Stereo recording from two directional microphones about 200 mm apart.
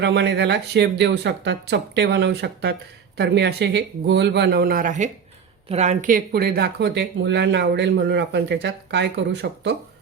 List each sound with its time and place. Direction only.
0.0 s speech: 60° right (ahead or behind)